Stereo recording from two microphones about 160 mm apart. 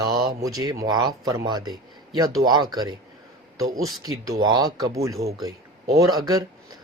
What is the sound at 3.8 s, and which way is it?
Speech, centre (ahead or behind).